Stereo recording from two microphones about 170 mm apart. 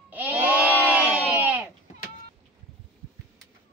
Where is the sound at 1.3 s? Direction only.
10° right (ahead or behind).